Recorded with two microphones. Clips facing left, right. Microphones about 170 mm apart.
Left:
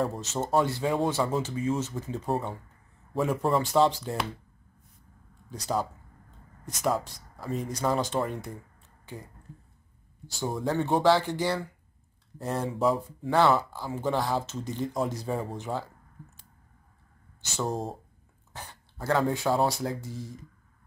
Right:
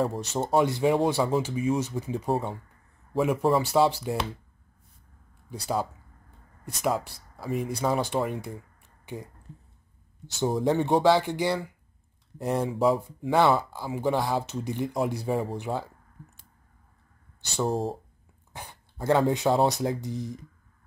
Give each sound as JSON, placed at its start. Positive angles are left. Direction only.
{"t": 0.2, "sound": "speech", "side_deg": -15}
{"t": 5.5, "sound": "speech", "side_deg": -10}
{"t": 10.6, "sound": "speech", "side_deg": -20}
{"t": 12.8, "sound": "speech", "side_deg": 0}
{"t": 13.3, "sound": "speech", "side_deg": -15}
{"t": 17.6, "sound": "speech", "side_deg": 0}
{"t": 18.5, "sound": "speech", "side_deg": -15}